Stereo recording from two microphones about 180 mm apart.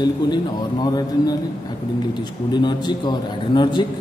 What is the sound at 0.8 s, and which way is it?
Speech, 20° left (ahead or behind).